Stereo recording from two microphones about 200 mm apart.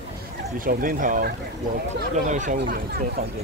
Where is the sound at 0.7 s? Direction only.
45° right (ahead or behind).